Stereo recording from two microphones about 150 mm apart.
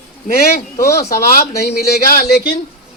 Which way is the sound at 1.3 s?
90° left.